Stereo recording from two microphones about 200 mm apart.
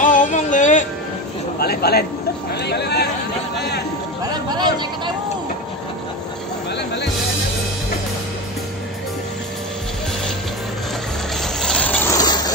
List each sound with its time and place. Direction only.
0.0 s music: 40° left (ahead or behind)
1.6 s speech: 50° left (ahead or behind)
4.2 s speech: 20° right (ahead or behind)
11.4 s a sound: 5° left (ahead or behind)